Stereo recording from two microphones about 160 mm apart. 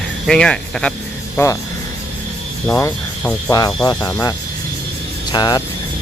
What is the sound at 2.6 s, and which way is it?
Speech, 10° left (ahead or behind).